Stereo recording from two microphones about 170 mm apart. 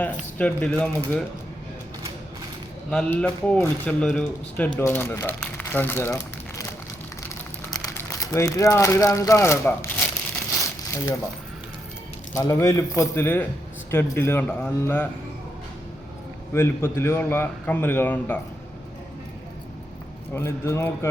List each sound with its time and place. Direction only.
0.3 s speech: 5° left (ahead or behind)
2.9 s speech: 5° left (ahead or behind)
5.4 s crumpling: 10° left (ahead or behind)
7.9 s speech: 15° left (ahead or behind)
10.9 s speech: 15° left (ahead or behind)
12.3 s speech: 20° left (ahead or behind)
16.5 s speech: 15° left (ahead or behind)
20.3 s speech: 15° left (ahead or behind)